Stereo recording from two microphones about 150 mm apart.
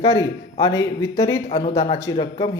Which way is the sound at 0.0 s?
20° left (ahead or behind).